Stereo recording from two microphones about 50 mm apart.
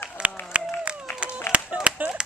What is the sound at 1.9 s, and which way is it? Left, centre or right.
Clapping, right.